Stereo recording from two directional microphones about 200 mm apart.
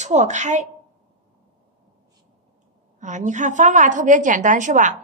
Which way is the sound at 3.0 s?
40° right (ahead or behind).